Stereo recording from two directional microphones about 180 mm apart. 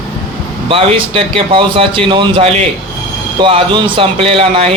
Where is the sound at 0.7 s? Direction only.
30° right (ahead or behind).